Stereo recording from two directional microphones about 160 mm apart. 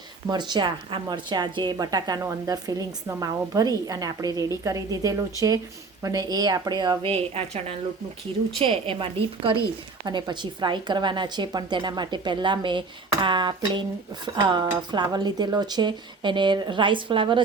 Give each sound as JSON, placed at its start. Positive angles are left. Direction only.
{"t": 0.3, "sound": "a woman's voice", "side_deg": -25}